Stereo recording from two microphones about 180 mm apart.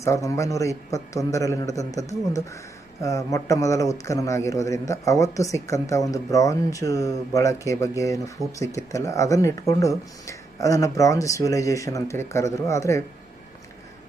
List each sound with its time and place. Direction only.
0.0 s speech: 15° left (ahead or behind)